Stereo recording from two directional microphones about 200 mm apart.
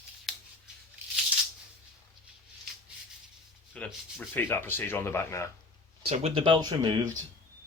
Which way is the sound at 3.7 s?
5° left (ahead or behind).